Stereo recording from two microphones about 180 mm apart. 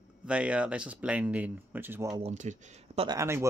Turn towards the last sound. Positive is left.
turn(degrees=-15)  # may be behind; listen again after turning